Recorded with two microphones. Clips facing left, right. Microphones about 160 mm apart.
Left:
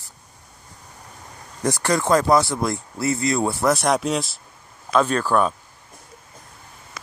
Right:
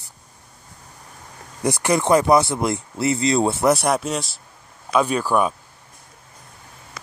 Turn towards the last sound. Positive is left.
turn(degrees=-10)  # may be behind; listen again after turning